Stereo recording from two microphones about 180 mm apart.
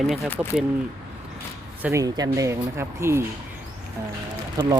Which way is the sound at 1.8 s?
15° right (ahead or behind).